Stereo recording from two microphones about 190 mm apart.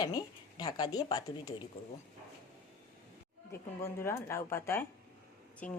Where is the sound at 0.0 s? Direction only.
20° left (ahead or behind).